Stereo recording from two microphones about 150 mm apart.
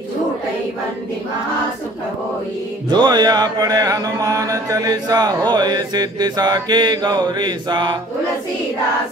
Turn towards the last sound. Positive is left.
turn(degrees=-30)  # may be behind; listen again after turning